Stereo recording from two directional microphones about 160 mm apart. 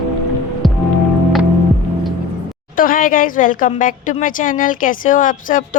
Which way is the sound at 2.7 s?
60° left (ahead or behind).